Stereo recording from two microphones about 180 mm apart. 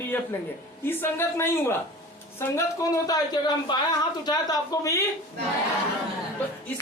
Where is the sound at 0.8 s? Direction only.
10° left (ahead or behind).